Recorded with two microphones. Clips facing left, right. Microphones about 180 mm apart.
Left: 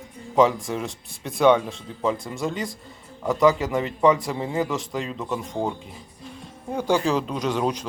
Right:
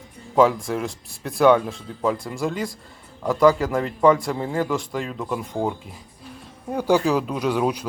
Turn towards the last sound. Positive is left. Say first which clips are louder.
# right 2 dB
turn(degrees=-10)  # may be behind; listen again after turning